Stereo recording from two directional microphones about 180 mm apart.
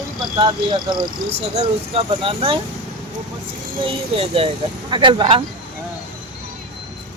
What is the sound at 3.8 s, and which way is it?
Speech, 30° right (ahead or behind).